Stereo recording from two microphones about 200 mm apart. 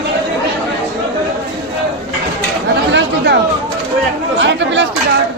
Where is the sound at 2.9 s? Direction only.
60° right (ahead or behind).